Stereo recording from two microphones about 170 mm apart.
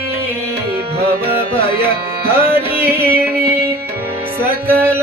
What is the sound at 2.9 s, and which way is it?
Music, 65° right (ahead or behind).